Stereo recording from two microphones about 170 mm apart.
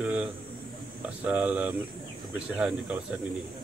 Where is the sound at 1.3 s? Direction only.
10° right (ahead or behind).